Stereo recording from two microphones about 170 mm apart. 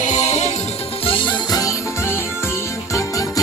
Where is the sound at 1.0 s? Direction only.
30° left (ahead or behind).